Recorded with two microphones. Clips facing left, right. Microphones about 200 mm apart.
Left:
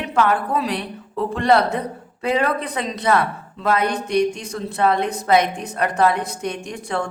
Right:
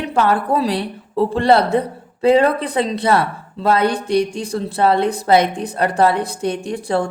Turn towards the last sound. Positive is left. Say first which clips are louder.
# right 6 dB
turn(degrees=-35)  # may be behind; listen again after turning